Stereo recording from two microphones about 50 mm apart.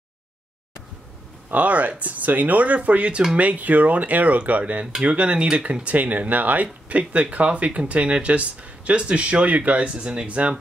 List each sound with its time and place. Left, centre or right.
1.5 s speech: right